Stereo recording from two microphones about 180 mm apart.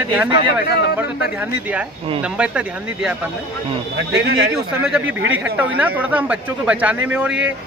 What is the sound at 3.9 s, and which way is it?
Speech, 80° right.